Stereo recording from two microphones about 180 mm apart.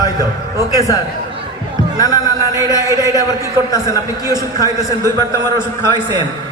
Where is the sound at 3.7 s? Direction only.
20° left (ahead or behind).